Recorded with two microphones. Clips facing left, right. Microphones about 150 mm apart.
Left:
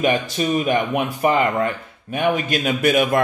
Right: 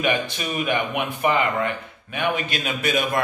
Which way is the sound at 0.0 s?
40° left (ahead or behind).